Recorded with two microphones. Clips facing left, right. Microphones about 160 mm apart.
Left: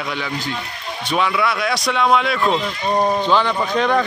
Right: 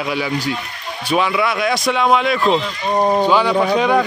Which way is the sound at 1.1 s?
5° right (ahead or behind).